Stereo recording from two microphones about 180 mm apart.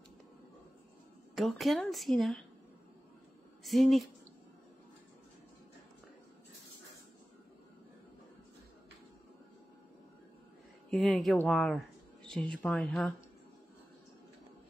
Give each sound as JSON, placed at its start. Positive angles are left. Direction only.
{"t": 1.3, "sound": "a woman's voice", "side_deg": 0}
{"t": 3.6, "sound": "a woman's voice", "side_deg": 0}
{"t": 10.9, "sound": "speech", "side_deg": 0}